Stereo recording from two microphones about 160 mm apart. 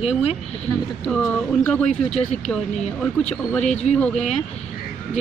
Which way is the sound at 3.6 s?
45° left (ahead or behind).